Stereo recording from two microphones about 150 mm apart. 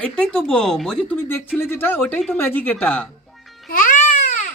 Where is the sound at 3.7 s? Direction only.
65° left (ahead or behind).